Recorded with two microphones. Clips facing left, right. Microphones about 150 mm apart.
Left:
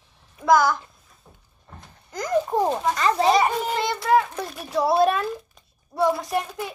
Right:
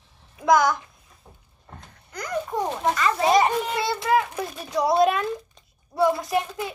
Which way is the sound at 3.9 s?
20° right (ahead or behind).